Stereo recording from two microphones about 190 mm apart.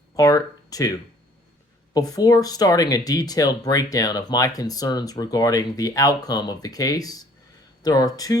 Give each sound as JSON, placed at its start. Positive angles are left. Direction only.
{"t": 0.2, "sound": "speech", "side_deg": 20}